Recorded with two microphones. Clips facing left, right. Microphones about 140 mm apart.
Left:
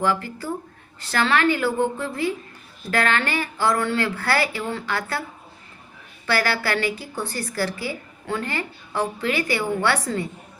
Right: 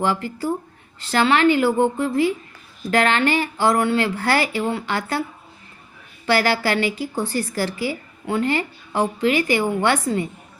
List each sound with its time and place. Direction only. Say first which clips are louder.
0.0 s a woman's voice: right 2 dB; 20° right (ahead or behind)
6.2 s a woman's voice: right 4 dB; 15° right (ahead or behind)